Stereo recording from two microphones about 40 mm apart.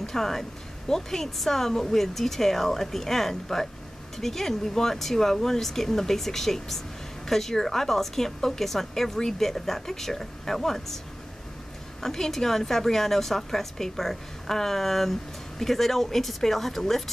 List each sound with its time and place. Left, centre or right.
0.0 s a woman's voice: centre
12.0 s a woman's voice: centre